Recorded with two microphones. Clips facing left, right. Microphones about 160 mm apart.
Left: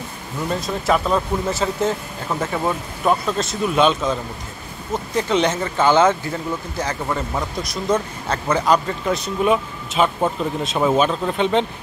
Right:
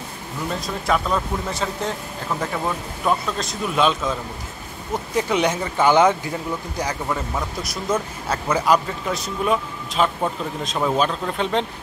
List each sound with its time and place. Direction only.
0.6 s speech: centre (ahead or behind)
5.1 s speech: 10° right (ahead or behind)
7.6 s speech: 10° right (ahead or behind)